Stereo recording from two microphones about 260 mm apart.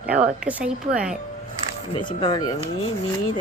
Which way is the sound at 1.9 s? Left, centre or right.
Centre.